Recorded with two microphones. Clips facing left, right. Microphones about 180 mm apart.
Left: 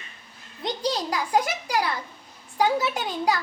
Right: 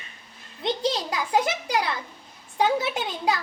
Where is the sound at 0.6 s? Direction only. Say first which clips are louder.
Right 1 dB; 25° right (ahead or behind).